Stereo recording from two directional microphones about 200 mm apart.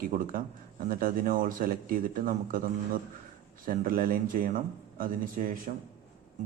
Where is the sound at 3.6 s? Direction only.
45° right (ahead or behind).